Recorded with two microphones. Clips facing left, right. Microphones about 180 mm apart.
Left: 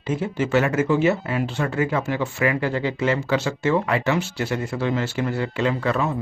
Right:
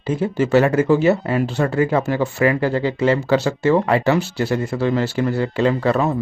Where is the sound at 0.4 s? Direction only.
35° right (ahead or behind).